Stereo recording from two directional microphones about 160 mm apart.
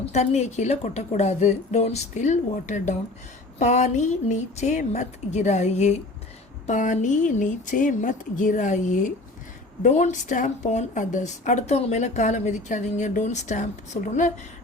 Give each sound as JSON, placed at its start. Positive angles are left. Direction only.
{"t": 0.0, "sound": "a woman's voice", "side_deg": 45}